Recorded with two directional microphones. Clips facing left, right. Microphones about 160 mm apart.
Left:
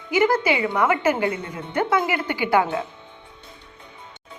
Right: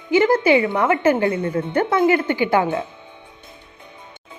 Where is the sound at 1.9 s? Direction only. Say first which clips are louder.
Right 6 dB; 30° right (ahead or behind).